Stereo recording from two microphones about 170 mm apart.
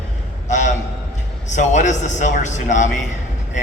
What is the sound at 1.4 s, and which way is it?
A man's voice, 45° left (ahead or behind).